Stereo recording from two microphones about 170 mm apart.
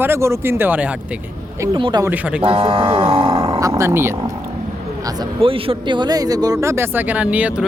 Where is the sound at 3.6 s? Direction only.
20° right (ahead or behind).